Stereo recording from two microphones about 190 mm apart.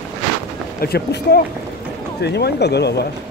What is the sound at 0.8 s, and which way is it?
Speech, 55° left (ahead or behind).